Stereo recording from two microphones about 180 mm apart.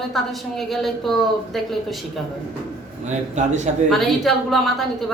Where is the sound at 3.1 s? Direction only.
40° right (ahead or behind).